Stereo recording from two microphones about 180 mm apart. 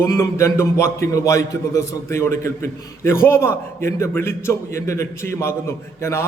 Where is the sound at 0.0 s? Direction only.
15° left (ahead or behind).